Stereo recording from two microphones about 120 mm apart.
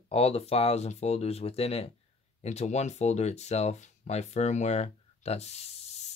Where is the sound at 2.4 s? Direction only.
70° left (ahead or behind).